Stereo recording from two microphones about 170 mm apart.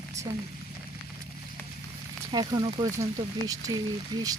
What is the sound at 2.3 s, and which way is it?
Speech, 25° right (ahead or behind).